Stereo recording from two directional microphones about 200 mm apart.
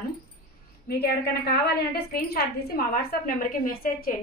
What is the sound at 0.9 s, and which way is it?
A woman's voice, 50° left (ahead or behind).